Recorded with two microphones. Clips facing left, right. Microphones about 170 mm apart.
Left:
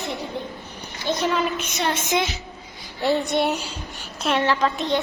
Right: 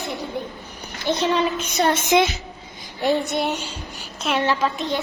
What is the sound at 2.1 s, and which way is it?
Speech, 70° right (ahead or behind).